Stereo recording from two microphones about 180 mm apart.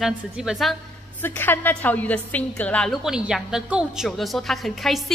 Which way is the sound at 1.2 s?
10° left (ahead or behind).